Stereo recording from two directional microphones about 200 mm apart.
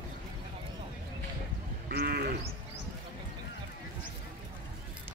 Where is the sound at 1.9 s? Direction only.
50° right (ahead or behind).